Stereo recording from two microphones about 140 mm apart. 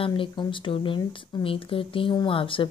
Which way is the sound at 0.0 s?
35° left (ahead or behind).